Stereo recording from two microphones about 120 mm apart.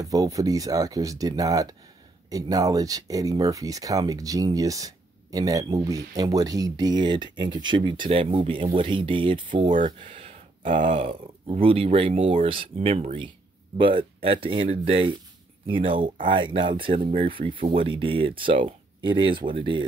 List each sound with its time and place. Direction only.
0.0 s speech: 30° right (ahead or behind)
9.8 s a sound: 90° right
11.4 s speech: 50° right (ahead or behind)
13.7 s speech: 45° right (ahead or behind)